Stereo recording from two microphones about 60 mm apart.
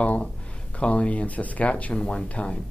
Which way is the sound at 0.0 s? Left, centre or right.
Left.